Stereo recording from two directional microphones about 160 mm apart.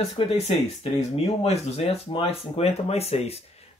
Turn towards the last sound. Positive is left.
turn(degrees=40)  # may be behind; listen again after turning